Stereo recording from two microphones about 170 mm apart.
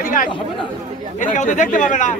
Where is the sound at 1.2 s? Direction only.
50° left (ahead or behind).